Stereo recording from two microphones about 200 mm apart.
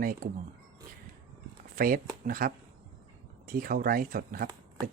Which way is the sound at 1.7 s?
45° right (ahead or behind).